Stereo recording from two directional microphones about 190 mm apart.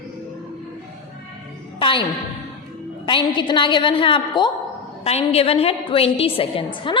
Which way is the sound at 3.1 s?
25° left (ahead or behind).